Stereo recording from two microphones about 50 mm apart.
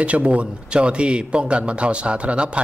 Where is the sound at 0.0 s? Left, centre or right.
Right.